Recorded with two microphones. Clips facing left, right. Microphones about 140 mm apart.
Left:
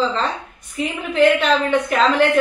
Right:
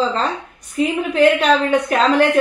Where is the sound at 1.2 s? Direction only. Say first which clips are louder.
Right 1 dB; 40° right (ahead or behind).